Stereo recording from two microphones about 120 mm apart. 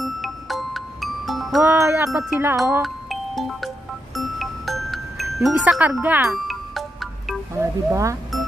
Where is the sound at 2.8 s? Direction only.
Centre (ahead or behind).